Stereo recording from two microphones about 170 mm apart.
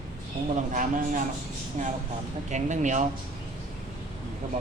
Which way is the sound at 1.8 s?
45° right (ahead or behind).